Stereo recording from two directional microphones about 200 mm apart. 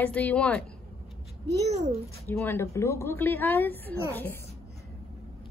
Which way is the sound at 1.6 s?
30° right (ahead or behind).